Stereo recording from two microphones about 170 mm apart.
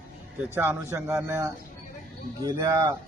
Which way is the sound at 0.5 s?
10° right (ahead or behind).